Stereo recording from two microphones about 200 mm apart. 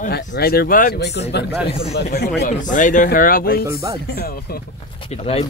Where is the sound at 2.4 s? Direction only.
40° left (ahead or behind).